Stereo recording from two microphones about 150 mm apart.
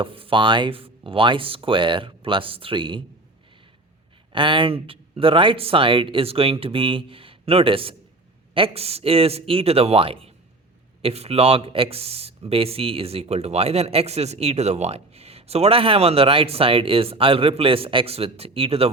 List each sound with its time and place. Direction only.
0.0 s speech: 35° right (ahead or behind)
4.3 s speech: 35° right (ahead or behind)